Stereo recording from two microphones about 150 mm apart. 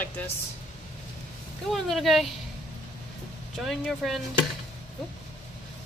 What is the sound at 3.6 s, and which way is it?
Speech, centre (ahead or behind).